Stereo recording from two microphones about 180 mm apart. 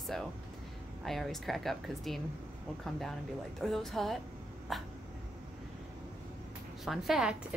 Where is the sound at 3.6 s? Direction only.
Centre (ahead or behind).